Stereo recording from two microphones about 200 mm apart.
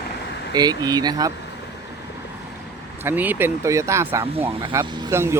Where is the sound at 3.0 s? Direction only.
10° right (ahead or behind).